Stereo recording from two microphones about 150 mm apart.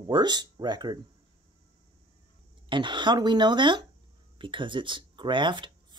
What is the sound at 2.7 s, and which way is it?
Speech, 30° right (ahead or behind).